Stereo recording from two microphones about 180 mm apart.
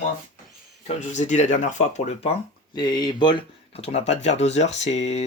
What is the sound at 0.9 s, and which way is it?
Speech, 40° left (ahead or behind).